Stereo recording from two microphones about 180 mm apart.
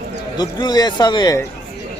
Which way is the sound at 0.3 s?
20° left (ahead or behind).